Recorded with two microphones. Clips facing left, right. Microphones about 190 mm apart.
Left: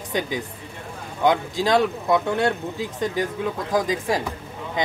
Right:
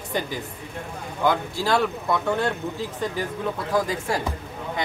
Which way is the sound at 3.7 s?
15° left (ahead or behind).